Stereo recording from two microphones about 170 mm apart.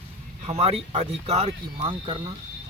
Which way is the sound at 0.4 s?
35° right (ahead or behind).